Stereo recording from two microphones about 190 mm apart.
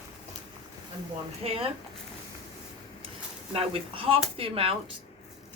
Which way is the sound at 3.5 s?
30° right (ahead or behind).